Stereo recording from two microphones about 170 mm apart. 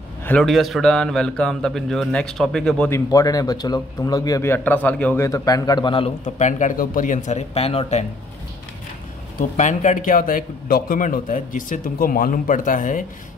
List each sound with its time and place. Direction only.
0.4 s a man's voice: centre (ahead or behind)
2.9 s a man's voice: 20° left (ahead or behind)
6.2 s speech: 45° left (ahead or behind)
9.4 s speech: 45° left (ahead or behind)